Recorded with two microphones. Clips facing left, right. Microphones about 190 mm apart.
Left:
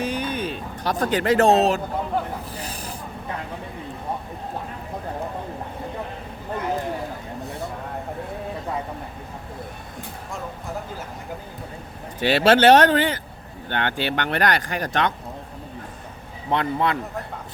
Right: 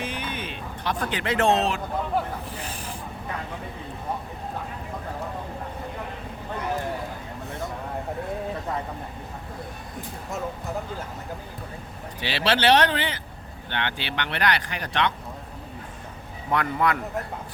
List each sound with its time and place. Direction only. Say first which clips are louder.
0.0 s a sound: left 6 dB; 40° left (ahead or behind)
2.6 s snake: left 2 dB; 40° left (ahead or behind)
12.2 s speech: left 8 dB; 50° left (ahead or behind)
16.5 s a man's voice: left 2 dB; 25° left (ahead or behind)